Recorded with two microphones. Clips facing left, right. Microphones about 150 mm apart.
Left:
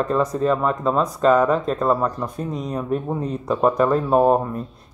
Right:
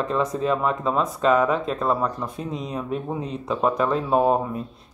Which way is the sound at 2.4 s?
45° left (ahead or behind).